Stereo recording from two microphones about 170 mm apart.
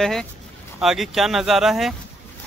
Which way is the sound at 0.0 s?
Centre (ahead or behind).